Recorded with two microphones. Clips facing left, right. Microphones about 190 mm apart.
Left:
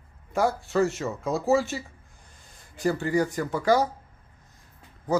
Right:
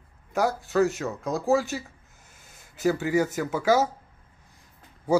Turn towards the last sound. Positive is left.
turn(degrees=-10)  # may be behind; listen again after turning